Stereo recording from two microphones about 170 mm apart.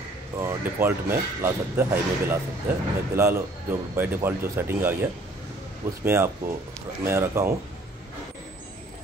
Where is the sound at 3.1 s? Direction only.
15° right (ahead or behind).